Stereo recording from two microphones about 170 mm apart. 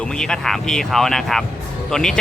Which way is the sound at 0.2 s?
5° left (ahead or behind).